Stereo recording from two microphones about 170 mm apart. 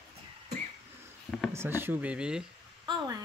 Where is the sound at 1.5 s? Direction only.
15° right (ahead or behind).